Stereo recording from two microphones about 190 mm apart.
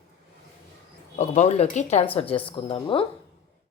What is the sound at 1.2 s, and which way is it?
Speech, 35° left (ahead or behind).